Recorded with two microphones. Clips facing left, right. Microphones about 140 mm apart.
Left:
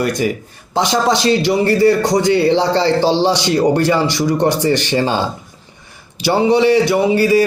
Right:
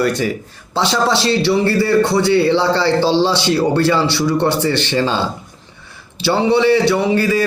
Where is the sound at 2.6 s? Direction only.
15° left (ahead or behind).